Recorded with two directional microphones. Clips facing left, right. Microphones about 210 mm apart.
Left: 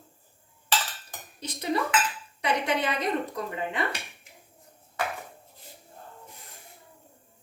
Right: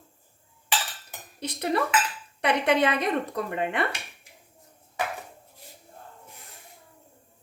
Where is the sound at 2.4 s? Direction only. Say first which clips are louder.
Right 5 dB; 65° right (ahead or behind).